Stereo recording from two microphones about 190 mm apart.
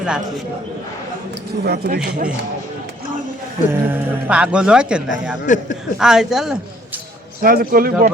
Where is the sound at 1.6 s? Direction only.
55° right (ahead or behind).